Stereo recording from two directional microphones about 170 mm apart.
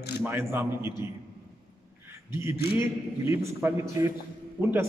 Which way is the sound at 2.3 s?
15° right (ahead or behind).